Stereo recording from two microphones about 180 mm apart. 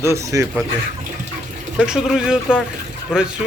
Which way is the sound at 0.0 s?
15° right (ahead or behind).